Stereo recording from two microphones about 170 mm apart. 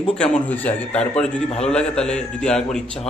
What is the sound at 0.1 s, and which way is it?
A man's voice, 5° left (ahead or behind).